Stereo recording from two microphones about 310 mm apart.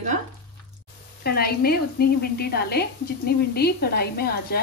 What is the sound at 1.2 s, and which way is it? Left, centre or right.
A woman's voice, left.